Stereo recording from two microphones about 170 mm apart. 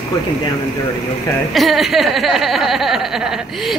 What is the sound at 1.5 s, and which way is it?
Speech, centre (ahead or behind).